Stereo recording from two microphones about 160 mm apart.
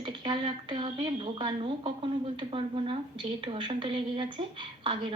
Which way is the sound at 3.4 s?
30° right (ahead or behind).